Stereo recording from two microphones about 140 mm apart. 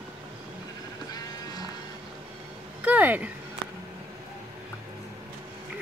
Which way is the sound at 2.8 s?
10° right (ahead or behind).